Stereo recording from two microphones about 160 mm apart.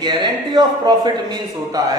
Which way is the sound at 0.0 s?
30° right (ahead or behind).